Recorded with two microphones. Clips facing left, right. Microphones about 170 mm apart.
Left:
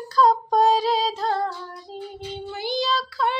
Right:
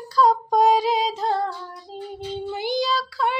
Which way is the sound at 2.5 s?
20° right (ahead or behind).